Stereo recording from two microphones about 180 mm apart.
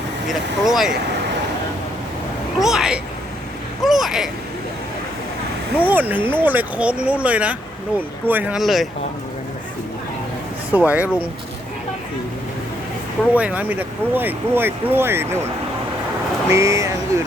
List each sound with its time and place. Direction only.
0.3 s speech: centre (ahead or behind)
2.6 s speech: centre (ahead or behind)
5.9 s speech: 10° right (ahead or behind)
10.7 s speech: 10° right (ahead or behind)
13.3 s speech: 10° right (ahead or behind)
16.5 s speech: 15° right (ahead or behind)